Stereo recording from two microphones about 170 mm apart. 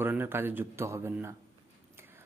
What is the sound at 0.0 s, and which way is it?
A man's voice, 10° right (ahead or behind).